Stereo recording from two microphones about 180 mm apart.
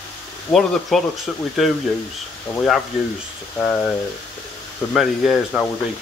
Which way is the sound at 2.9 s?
Centre (ahead or behind).